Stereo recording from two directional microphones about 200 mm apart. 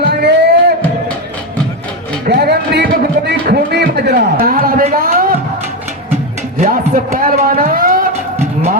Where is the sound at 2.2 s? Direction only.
50° right (ahead or behind).